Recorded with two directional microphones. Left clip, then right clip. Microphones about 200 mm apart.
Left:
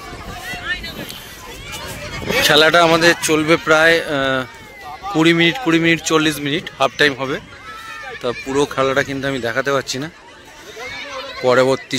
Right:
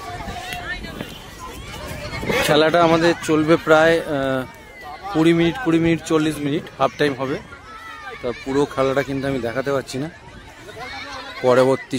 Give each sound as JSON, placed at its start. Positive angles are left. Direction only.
{"t": 2.4, "sound": "a man's voice", "side_deg": 0}
{"t": 3.4, "sound": "a man's voice", "side_deg": -15}
{"t": 11.4, "sound": "speech", "side_deg": -10}